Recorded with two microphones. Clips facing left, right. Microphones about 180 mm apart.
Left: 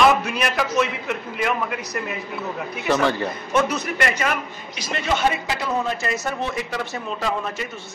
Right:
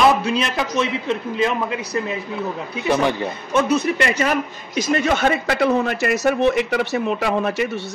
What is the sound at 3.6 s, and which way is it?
A man's voice, 30° right (ahead or behind).